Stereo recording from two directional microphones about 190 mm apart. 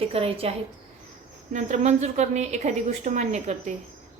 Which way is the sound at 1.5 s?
35° right (ahead or behind).